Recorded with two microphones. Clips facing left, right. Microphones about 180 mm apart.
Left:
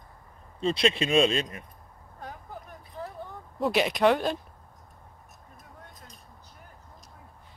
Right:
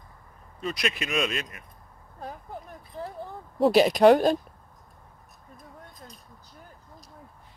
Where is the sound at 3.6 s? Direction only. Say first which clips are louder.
Right 6 dB; 35° right (ahead or behind).